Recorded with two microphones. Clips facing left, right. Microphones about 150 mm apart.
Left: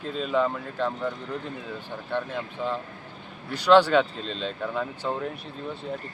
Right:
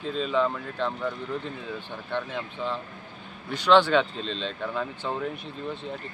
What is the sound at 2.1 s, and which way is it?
Speech, 5° left (ahead or behind).